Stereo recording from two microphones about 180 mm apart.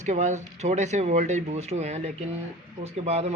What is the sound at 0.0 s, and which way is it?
Speech, 40° right (ahead or behind).